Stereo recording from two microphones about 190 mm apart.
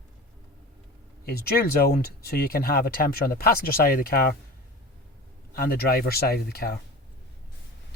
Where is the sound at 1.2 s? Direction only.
55° left (ahead or behind).